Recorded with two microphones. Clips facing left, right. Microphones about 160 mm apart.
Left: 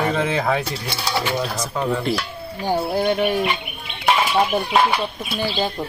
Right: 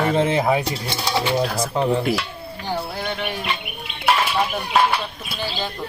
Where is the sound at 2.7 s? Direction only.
40° left (ahead or behind).